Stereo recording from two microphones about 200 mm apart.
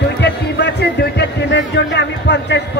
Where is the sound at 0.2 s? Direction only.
55° left (ahead or behind).